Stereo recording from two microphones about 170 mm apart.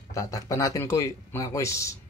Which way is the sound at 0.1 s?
20° left (ahead or behind).